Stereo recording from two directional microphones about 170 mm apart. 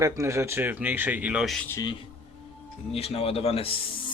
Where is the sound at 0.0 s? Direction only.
15° right (ahead or behind); by 1.6 s centre (ahead or behind).